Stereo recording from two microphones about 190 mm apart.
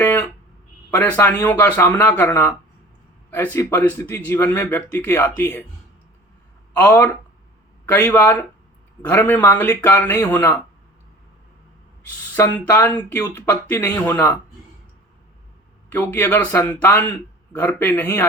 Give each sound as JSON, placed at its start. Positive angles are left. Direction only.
{"t": 0.0, "sound": "a sound", "side_deg": 10}
{"t": 0.9, "sound": "a man's voice", "side_deg": 10}
{"t": 6.7, "sound": "a man's voice", "side_deg": 10}
{"t": 12.4, "sound": "a man's voice", "side_deg": 15}
{"t": 15.9, "sound": "a man's voice", "side_deg": 10}